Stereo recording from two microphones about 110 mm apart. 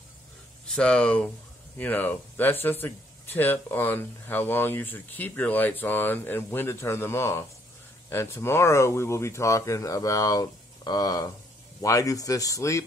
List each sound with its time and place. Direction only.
0.7 s speech: 10° left (ahead or behind); by 12.8 s 30° left (ahead or behind)